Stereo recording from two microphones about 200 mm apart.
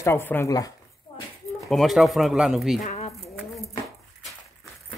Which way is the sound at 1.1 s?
25° left (ahead or behind).